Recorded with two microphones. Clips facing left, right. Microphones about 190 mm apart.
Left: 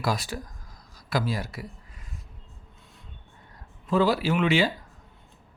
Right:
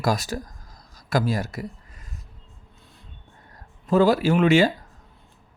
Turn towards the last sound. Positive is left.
turn(degrees=-45)  # may be behind; listen again after turning